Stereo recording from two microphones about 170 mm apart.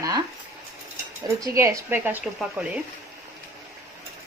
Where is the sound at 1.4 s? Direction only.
20° right (ahead or behind).